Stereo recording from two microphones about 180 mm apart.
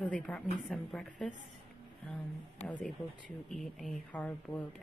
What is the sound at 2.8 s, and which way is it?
Speech, 5° left (ahead or behind).